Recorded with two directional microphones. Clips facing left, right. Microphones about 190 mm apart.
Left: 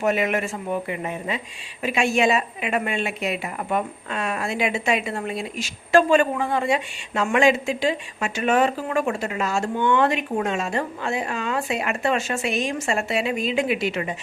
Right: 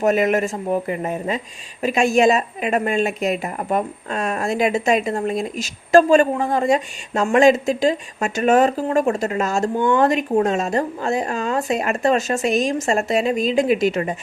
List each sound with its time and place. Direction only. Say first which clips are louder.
0.0 s a woman's voice: right 5 dB; 40° right (ahead or behind)